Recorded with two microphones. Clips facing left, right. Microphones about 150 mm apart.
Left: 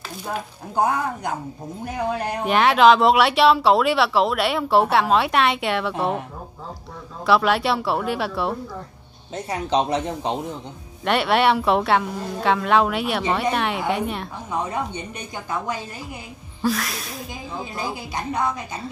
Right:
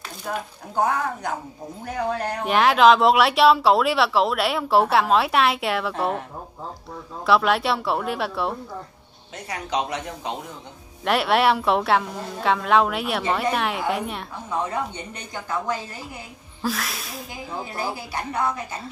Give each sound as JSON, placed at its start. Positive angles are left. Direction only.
{"t": 0.7, "sound": "a woman's voice", "side_deg": 15}
{"t": 2.4, "sound": "speech", "side_deg": 0}
{"t": 7.2, "sound": "speech", "side_deg": 0}
{"t": 9.3, "sound": "speech", "side_deg": 30}
{"t": 11.1, "sound": "speech", "side_deg": 0}
{"t": 14.5, "sound": "a woman's voice", "side_deg": 15}
{"t": 16.6, "sound": "speech", "side_deg": 0}
{"t": 17.7, "sound": "a woman's voice", "side_deg": 20}